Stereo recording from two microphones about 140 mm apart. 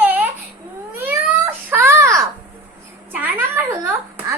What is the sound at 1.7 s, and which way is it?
Baby cry, 15° right (ahead or behind).